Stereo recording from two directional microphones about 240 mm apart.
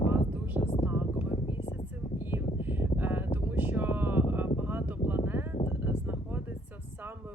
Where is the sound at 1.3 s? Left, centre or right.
Left.